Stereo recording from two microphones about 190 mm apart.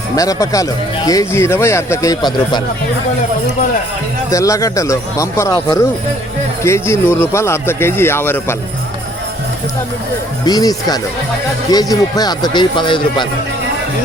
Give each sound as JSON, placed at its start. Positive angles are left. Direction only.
{"t": 0.2, "sound": "speech", "side_deg": 20}
{"t": 4.3, "sound": "speech", "side_deg": 15}
{"t": 10.4, "sound": "speech", "side_deg": 20}